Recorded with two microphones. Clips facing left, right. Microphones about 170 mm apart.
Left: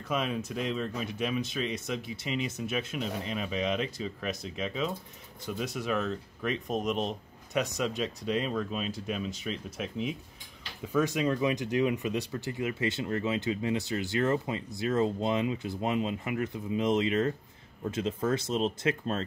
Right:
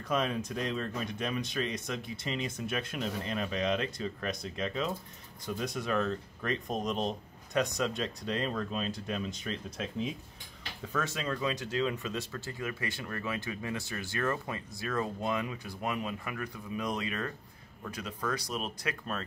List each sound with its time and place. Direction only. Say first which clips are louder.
0.0 s speech: even; 5° left (ahead or behind); by 19.2 s 25° left (ahead or behind)